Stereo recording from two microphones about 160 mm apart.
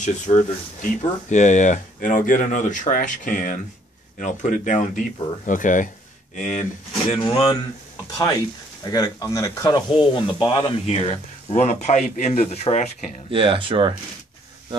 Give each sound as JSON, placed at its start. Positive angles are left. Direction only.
{"t": 0.0, "sound": "speech", "side_deg": 50}
{"t": 7.2, "sound": "speech", "side_deg": 25}
{"t": 13.3, "sound": "speech", "side_deg": -35}